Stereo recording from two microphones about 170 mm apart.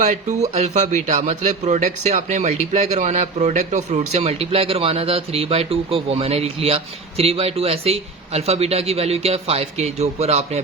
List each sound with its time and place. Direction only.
0.0 s a man's voice: 45° right (ahead or behind)